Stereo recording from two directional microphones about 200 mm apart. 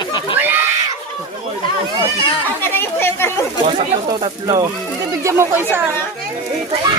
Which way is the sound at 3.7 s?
20° right (ahead or behind).